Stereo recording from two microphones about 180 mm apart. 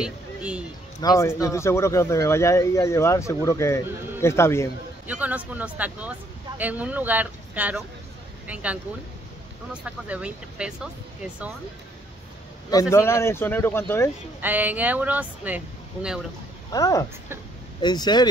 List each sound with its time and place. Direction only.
0.0 s speech: 5° right (ahead or behind)
1.0 s speech: 20° left (ahead or behind)
5.0 s speech: 10° right (ahead or behind)
9.8 s speech: 5° right (ahead or behind)
12.9 s speech: 15° left (ahead or behind)
14.4 s speech: 10° right (ahead or behind)
16.7 s speech: 20° left (ahead or behind)